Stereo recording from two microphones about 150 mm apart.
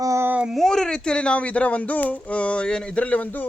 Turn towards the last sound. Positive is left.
turn(degrees=10)  # may be behind; listen again after turning